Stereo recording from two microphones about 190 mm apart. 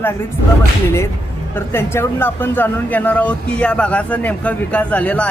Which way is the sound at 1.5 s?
15° left (ahead or behind).